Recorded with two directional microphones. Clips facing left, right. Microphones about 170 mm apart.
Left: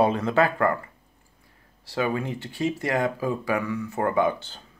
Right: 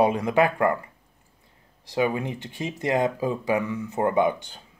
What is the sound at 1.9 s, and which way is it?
Speech, 20° right (ahead or behind).